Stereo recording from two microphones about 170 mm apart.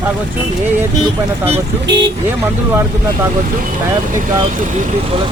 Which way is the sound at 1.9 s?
90° right.